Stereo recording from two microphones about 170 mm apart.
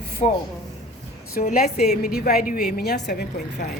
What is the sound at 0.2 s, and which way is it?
Speech, 40° left (ahead or behind).